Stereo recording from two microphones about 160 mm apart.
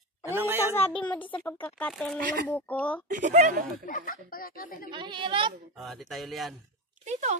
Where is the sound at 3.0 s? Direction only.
50° right (ahead or behind).